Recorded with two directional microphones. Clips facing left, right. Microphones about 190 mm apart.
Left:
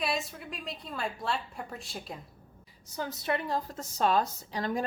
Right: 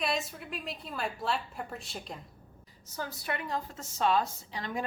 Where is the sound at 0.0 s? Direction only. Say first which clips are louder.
Even; centre (ahead or behind).